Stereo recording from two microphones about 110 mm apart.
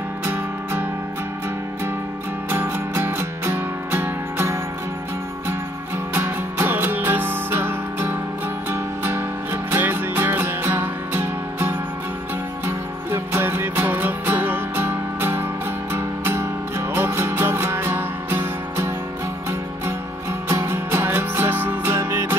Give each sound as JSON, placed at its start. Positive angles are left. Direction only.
{"t": 0.2, "sound": "music", "side_deg": -20}
{"t": 2.5, "sound": "music", "side_deg": -20}
{"t": 6.1, "sound": "music", "side_deg": -20}
{"t": 20.4, "sound": "music", "side_deg": -25}